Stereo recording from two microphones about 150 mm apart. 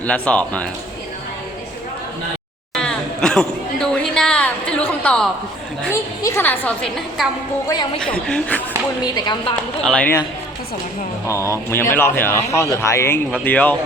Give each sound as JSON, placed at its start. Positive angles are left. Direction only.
{"t": 0.0, "sound": "a woman's voice", "side_deg": 10}
{"t": 2.7, "sound": "a sound", "side_deg": 5}
{"t": 5.9, "sound": "a woman's voice", "side_deg": 15}
{"t": 9.1, "sound": "speech", "side_deg": 30}
{"t": 9.8, "sound": "a woman's voice", "side_deg": 10}
{"t": 11.3, "sound": "a woman's voice", "side_deg": 20}